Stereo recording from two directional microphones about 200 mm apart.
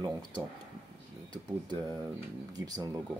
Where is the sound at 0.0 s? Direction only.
20° right (ahead or behind).